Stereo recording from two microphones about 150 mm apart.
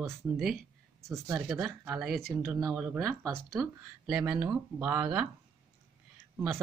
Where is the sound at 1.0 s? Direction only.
20° right (ahead or behind).